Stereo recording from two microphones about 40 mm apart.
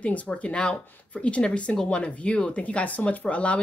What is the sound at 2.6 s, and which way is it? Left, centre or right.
Speech, left.